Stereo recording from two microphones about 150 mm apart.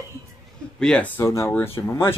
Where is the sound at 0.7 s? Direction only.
5° left (ahead or behind).